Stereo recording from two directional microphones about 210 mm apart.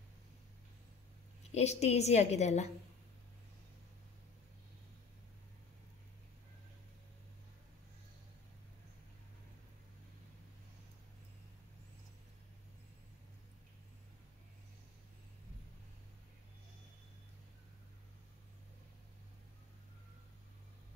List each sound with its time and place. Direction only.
1.5 s a woman's voice: 30° left (ahead or behind)